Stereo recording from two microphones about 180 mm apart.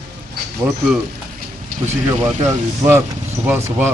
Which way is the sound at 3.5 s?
10° right (ahead or behind).